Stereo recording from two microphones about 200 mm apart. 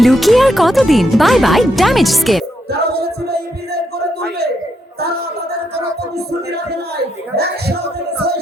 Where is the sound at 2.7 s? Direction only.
50° right (ahead or behind).